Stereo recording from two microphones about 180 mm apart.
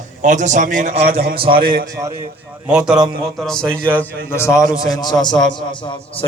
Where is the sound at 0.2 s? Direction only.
45° right (ahead or behind).